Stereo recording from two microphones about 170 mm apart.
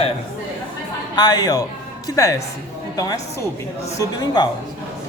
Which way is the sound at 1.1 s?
25° left (ahead or behind).